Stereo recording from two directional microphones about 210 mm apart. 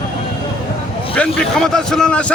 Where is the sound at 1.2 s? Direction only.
5° left (ahead or behind).